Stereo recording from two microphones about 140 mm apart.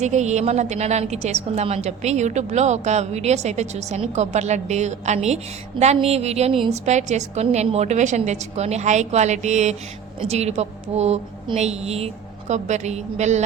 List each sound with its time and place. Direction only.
0.0 s a woman's voice: 55° right (ahead or behind)